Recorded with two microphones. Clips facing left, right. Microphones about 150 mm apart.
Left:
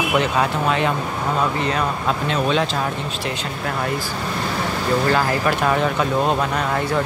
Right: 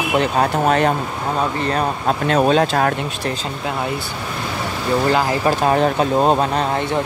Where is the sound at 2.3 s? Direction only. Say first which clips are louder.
Right 7 dB; 45° right (ahead or behind).